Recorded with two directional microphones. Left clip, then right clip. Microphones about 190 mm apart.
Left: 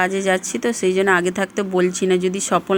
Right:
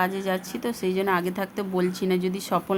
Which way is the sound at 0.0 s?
25° left (ahead or behind).